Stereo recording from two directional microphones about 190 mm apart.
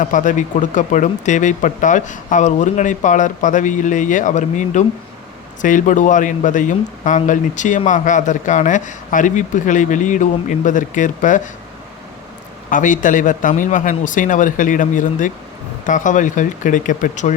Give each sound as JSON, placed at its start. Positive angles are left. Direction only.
{"t": 0.0, "sound": "speech", "side_deg": 40}
{"t": 12.7, "sound": "speech", "side_deg": 45}